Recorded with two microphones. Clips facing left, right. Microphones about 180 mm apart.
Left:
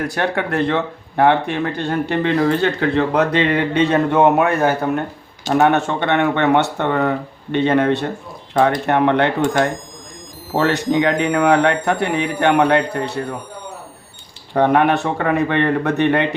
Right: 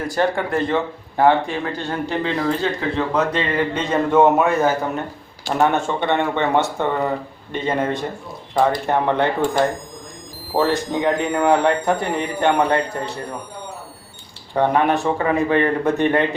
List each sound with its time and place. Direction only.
0.0 s speech: 70° left (ahead or behind)
14.5 s speech: 65° left (ahead or behind)